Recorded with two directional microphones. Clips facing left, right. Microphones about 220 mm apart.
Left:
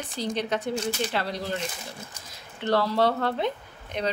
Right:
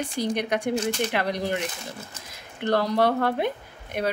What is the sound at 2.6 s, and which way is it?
Speech, 15° right (ahead or behind).